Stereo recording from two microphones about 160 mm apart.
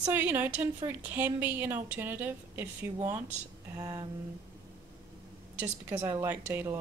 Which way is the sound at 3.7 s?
20° right (ahead or behind).